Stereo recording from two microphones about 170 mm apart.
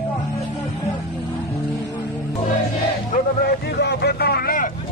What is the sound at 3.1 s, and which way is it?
Vehicle, 70° left (ahead or behind).